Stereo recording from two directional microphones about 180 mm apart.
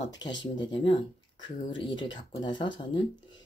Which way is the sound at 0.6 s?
25° left (ahead or behind).